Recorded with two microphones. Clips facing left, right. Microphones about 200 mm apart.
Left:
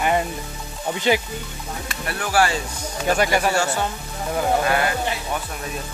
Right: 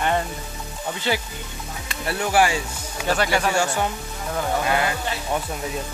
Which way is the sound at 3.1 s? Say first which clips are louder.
Left 2 dB; 15° left (ahead or behind).